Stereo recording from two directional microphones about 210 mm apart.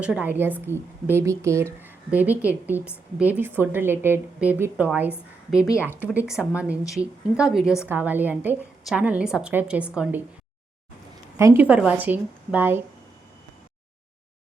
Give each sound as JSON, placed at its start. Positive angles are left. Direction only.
{"t": 0.0, "sound": "a woman's voice", "side_deg": -5}
{"t": 5.6, "sound": "speech", "side_deg": 15}
{"t": 6.1, "sound": "a woman's voice", "side_deg": 0}
{"t": 11.3, "sound": "a woman's voice", "side_deg": -10}